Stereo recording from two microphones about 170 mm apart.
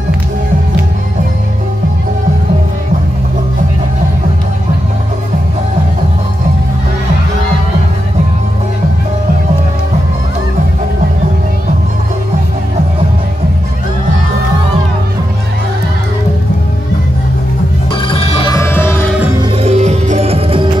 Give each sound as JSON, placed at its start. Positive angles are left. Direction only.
{"t": 17.9, "sound": "music", "side_deg": 30}
{"t": 18.5, "sound": "music", "side_deg": 10}
{"t": 19.1, "sound": "music", "side_deg": -10}
{"t": 19.5, "sound": "music", "side_deg": -40}